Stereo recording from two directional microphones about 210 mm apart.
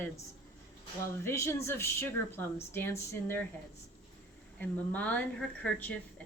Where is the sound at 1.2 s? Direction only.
10° left (ahead or behind).